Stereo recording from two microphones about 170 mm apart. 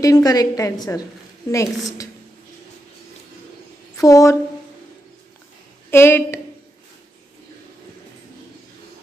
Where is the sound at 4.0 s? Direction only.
20° left (ahead or behind).